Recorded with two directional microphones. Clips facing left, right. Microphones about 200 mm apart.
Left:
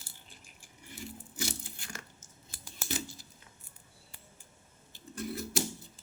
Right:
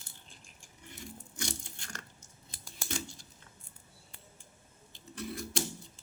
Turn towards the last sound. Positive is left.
turn(degrees=5)  # may be behind; listen again after turning